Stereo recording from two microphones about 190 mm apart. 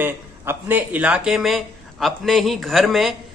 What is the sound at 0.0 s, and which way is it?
Speech, 10° right (ahead or behind).